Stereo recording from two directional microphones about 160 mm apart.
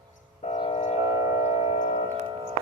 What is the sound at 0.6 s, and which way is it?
Train, 40° left (ahead or behind).